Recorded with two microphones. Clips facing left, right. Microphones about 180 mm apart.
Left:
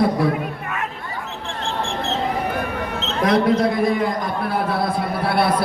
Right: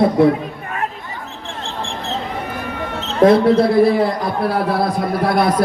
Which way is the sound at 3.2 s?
30° right (ahead or behind).